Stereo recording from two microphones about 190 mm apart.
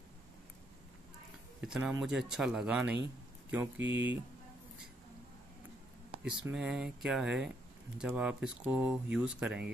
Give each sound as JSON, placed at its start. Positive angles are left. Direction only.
{"t": 1.6, "sound": "speech", "side_deg": -5}
{"t": 3.8, "sound": "speech", "side_deg": -70}
{"t": 6.5, "sound": "speech", "side_deg": 0}